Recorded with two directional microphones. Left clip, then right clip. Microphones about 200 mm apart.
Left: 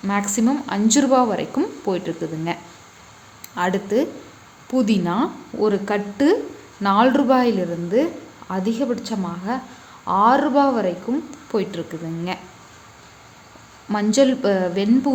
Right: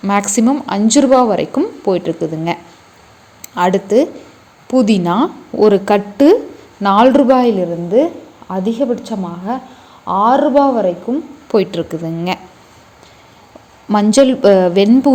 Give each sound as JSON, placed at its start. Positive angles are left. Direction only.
{"t": 0.0, "sound": "a woman's voice", "side_deg": -30}
{"t": 11.5, "sound": "speech", "side_deg": -25}
{"t": 13.9, "sound": "speech", "side_deg": -30}